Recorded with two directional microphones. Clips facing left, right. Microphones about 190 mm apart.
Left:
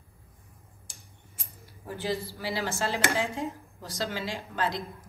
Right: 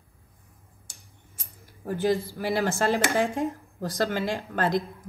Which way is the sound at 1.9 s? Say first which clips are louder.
Right 7 dB; 50° right (ahead or behind).